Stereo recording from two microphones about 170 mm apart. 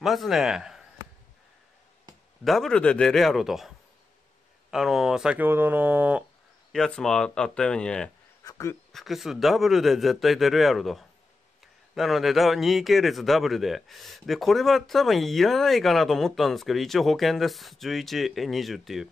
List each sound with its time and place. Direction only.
0.0 s a man's voice: centre (ahead or behind)
2.4 s a man's voice: centre (ahead or behind)
6.7 s a man's voice: 5° left (ahead or behind)
8.5 s speech: 20° left (ahead or behind)
8.9 s a man's voice: centre (ahead or behind)